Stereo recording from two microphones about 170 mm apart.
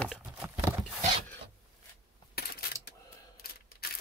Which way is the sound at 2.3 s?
65° left (ahead or behind).